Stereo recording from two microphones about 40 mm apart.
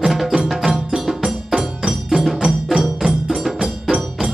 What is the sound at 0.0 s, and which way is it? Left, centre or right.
Music, centre.